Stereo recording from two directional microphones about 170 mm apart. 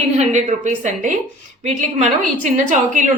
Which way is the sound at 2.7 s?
45° right (ahead or behind).